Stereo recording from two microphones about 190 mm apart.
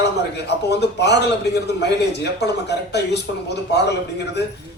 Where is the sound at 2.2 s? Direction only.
60° left (ahead or behind).